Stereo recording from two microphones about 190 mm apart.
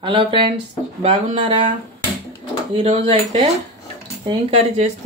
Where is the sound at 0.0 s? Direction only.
25° right (ahead or behind).